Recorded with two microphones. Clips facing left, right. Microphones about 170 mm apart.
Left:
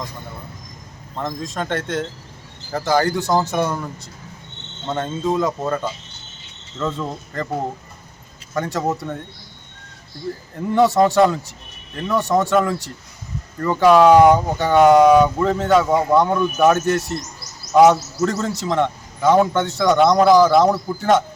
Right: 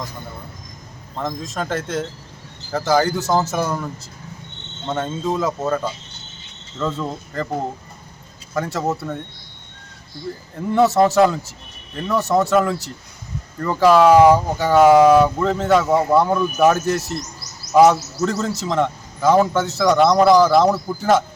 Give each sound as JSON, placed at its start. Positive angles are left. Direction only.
{"t": 1.1, "sound": "speech", "side_deg": 0}
{"t": 8.5, "sound": "speech", "side_deg": 0}
{"t": 10.8, "sound": "a man's voice", "side_deg": -5}